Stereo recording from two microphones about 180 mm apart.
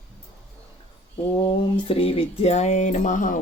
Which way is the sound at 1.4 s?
30° left (ahead or behind).